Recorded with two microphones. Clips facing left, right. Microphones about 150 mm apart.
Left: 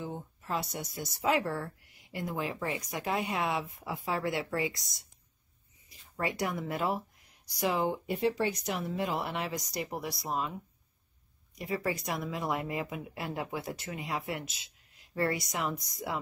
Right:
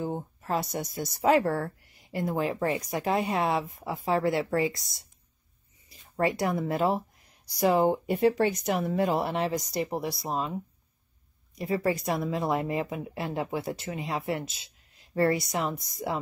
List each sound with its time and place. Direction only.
0.0 s speech: 45° right (ahead or behind)
6.1 s speech: 35° right (ahead or behind)
7.6 s speech: 45° right (ahead or behind)